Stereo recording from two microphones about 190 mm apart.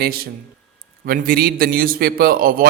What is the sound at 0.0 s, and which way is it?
A man's voice, 50° right (ahead or behind).